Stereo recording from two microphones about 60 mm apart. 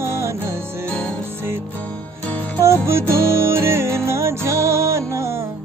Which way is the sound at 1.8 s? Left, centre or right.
Left.